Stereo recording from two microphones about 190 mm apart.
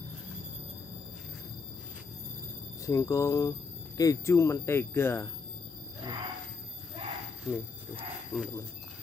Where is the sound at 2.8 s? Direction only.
15° left (ahead or behind).